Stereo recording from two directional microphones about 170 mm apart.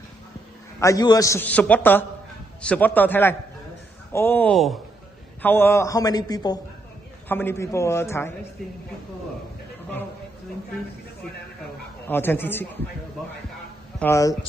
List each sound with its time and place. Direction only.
0.7 s a man's voice: 20° left (ahead or behind)
7.2 s a man's voice: 15° left (ahead or behind)
12.1 s a man's voice: 10° left (ahead or behind)
13.9 s speech: 15° left (ahead or behind)